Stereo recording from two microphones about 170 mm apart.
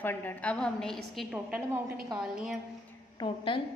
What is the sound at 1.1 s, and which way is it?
A woman's voice, 10° right (ahead or behind).